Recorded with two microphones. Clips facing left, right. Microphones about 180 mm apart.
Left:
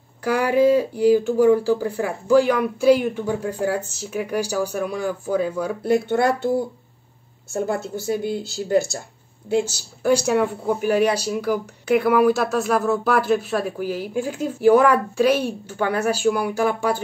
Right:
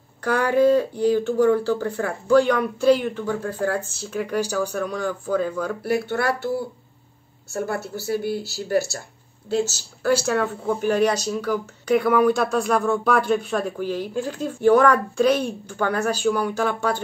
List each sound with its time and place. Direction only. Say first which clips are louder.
0.2 s speech: left 1 dB; 10° left (ahead or behind)
7.5 s speech: left 3 dB; 20° left (ahead or behind)